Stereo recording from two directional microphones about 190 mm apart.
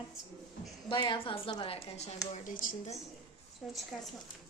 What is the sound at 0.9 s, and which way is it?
A woman's voice, 25° left (ahead or behind).